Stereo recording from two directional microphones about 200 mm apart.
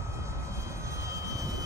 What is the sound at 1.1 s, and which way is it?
Vehicle, 15° right (ahead or behind).